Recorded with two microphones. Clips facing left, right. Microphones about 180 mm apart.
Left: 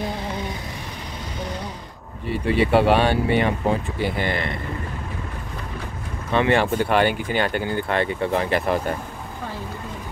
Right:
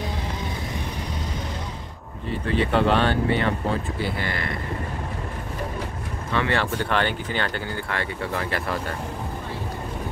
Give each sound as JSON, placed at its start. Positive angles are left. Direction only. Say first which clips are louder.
{"t": 2.4, "sound": "speech", "louder": "left 4 dB", "side_deg": 10}
{"t": 6.3, "sound": "speech", "louder": "left 5 dB", "side_deg": 20}